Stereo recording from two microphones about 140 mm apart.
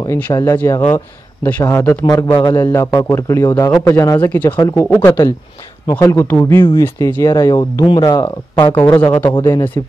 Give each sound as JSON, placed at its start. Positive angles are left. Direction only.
{"t": 0.0, "sound": "speech", "side_deg": 25}
{"t": 5.9, "sound": "speech", "side_deg": 15}
{"t": 9.3, "sound": "speech", "side_deg": 30}